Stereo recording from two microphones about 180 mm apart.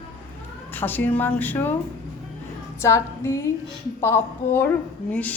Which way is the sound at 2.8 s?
15° left (ahead or behind).